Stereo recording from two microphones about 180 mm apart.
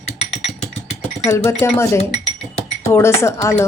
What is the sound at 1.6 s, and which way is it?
Speech, 15° left (ahead or behind).